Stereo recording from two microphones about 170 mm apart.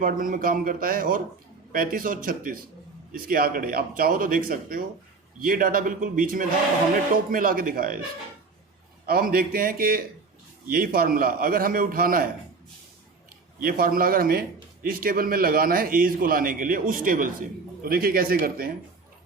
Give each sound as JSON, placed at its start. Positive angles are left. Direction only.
{"t": 0.0, "sound": "a man's voice", "side_deg": -55}
{"t": 9.0, "sound": "a man's voice", "side_deg": -60}
{"t": 13.6, "sound": "a man's voice", "side_deg": -60}